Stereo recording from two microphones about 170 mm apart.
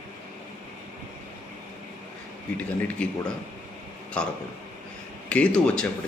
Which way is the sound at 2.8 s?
5° left (ahead or behind).